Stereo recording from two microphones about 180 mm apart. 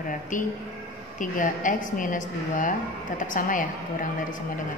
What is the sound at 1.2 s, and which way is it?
A woman's voice, 45° left (ahead or behind).